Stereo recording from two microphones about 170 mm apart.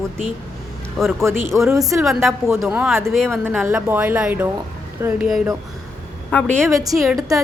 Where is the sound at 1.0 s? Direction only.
Centre (ahead or behind).